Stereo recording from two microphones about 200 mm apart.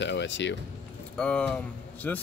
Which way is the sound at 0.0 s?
65° left (ahead or behind).